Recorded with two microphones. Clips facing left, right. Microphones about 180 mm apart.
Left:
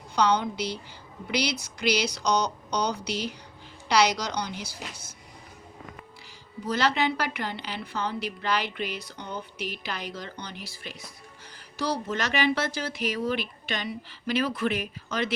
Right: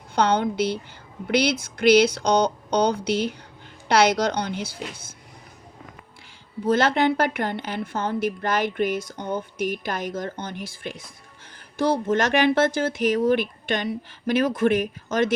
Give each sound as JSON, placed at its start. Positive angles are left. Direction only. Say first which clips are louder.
{"t": 0.2, "sound": "a woman's voice", "louder": "right 4 dB", "side_deg": -55}
{"t": 6.7, "sound": "a woman's voice", "louder": "right 6 dB", "side_deg": -50}